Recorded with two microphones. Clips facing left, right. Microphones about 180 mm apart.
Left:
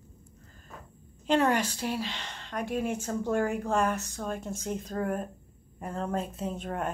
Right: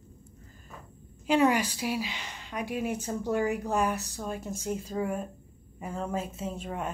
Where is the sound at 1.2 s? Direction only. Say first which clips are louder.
Right 1 dB; 10° right (ahead or behind).